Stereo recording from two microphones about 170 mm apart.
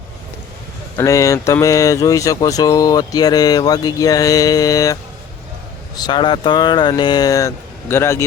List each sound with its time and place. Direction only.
0.9 s speech: 20° left (ahead or behind)
6.0 s speech: 25° left (ahead or behind)